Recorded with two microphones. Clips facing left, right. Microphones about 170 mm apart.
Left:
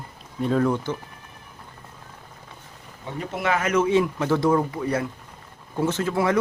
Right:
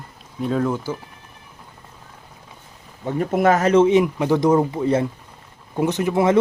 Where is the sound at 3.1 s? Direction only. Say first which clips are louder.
Right 8 dB; 45° right (ahead or behind).